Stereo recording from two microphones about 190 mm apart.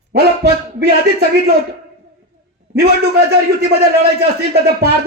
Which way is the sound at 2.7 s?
55° right (ahead or behind).